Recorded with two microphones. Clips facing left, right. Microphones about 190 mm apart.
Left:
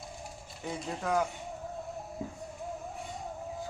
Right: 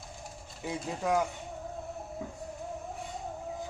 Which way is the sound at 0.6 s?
5° right (ahead or behind).